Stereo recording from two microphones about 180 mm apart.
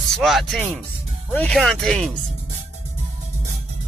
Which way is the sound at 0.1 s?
Centre (ahead or behind).